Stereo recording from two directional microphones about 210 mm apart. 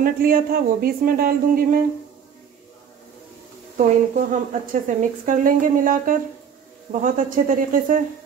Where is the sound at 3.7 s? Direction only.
35° right (ahead or behind).